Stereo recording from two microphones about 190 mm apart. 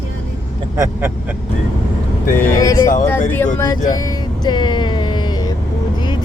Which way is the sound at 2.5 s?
15° left (ahead or behind).